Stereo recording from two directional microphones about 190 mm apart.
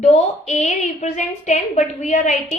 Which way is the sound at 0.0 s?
40° left (ahead or behind).